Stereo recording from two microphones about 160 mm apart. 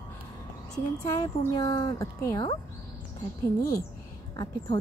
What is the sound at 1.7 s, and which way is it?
Speech, 25° left (ahead or behind).